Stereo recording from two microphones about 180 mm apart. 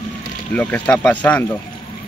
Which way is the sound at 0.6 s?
10° left (ahead or behind).